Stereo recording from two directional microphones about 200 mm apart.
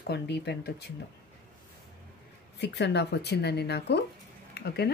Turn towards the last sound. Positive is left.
turn(degrees=55)  # may be behind; listen again after turning